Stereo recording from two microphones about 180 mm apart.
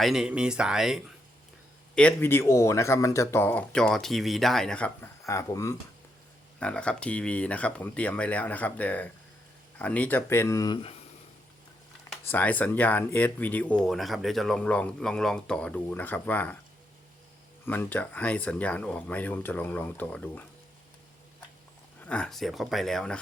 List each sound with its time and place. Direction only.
0.0 s speech: centre (ahead or behind)
2.0 s speech: 10° left (ahead or behind)
5.2 s speech: 15° left (ahead or behind)
6.6 s speech: 5° left (ahead or behind); by 10.9 s 25° left (ahead or behind)
12.1 s speech: 10° left (ahead or behind)
17.7 s speech: 10° left (ahead or behind)
22.0 s speech: 5° left (ahead or behind)